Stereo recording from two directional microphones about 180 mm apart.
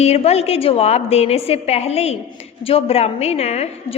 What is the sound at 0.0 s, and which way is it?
A woman's voice, 35° left (ahead or behind).